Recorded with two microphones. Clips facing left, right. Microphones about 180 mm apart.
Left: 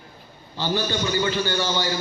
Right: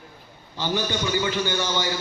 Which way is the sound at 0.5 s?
15° right (ahead or behind).